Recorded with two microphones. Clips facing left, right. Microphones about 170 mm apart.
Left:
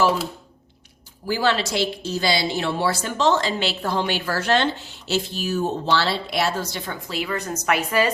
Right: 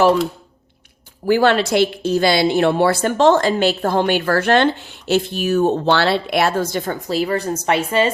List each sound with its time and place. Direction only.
1.3 s a woman's voice: 60° right (ahead or behind); by 8.1 s 25° right (ahead or behind)